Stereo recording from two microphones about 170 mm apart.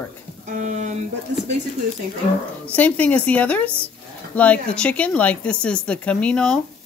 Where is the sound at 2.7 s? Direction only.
10° left (ahead or behind).